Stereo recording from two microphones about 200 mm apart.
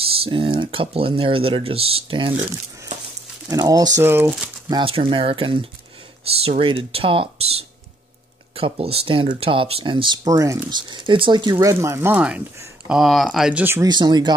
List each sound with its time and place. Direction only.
0.2 s speech: 25° right (ahead or behind); by 4.5 s 10° right (ahead or behind)
4.6 s speech: 25° right (ahead or behind)